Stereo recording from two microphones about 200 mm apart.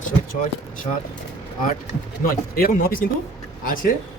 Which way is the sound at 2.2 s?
45° left (ahead or behind).